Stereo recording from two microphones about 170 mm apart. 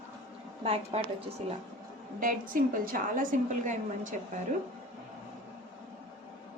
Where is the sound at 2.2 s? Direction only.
55° right (ahead or behind).